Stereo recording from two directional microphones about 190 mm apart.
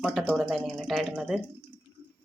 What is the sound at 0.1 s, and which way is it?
Speech, 5° right (ahead or behind).